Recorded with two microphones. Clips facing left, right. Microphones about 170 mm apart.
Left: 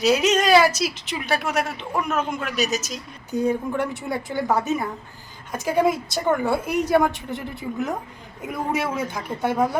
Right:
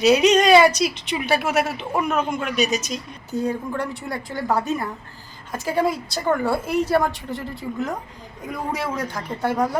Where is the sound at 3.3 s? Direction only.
15° left (ahead or behind).